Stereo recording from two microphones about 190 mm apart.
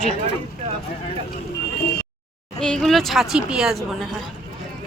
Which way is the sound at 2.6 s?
Centre (ahead or behind).